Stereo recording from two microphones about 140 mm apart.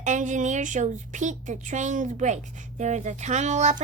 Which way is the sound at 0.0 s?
60° right (ahead or behind).